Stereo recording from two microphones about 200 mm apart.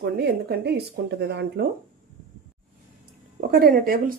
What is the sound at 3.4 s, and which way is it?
Speech, 50° right (ahead or behind).